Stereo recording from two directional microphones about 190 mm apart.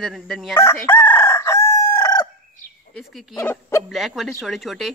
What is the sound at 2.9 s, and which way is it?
Speech, centre (ahead or behind).